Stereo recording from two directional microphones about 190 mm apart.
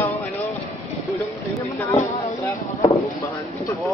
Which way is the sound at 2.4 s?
15° left (ahead or behind).